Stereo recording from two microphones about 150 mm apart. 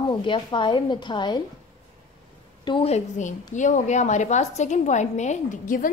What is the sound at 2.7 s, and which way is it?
A woman's voice, 40° left (ahead or behind).